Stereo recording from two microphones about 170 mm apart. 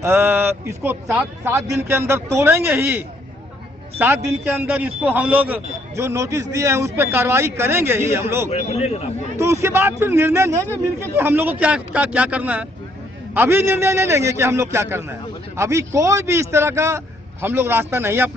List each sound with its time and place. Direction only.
0.0 s a man's voice: 15° right (ahead or behind)
8.5 s a man's voice: 40° left (ahead or behind)
9.4 s a man's voice: 15° right (ahead or behind)